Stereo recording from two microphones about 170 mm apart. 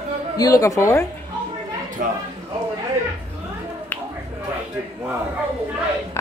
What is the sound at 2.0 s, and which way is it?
Speech, 55° right (ahead or behind).